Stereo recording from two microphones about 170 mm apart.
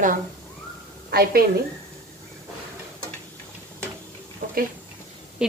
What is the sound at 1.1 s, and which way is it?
Speech, 65° right (ahead or behind).